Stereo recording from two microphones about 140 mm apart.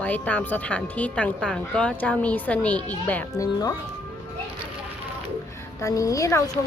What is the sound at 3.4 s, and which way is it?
Speech, 25° left (ahead or behind).